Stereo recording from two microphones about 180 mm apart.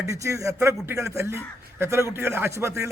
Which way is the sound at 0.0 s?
15° right (ahead or behind).